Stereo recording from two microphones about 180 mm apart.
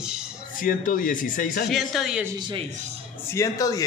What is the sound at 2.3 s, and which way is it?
Speech, 25° right (ahead or behind).